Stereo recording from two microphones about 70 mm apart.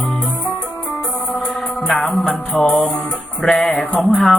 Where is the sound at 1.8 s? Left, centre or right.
Centre.